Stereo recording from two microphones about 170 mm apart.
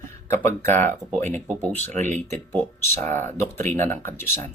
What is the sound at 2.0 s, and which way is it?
Speech, 45° right (ahead or behind).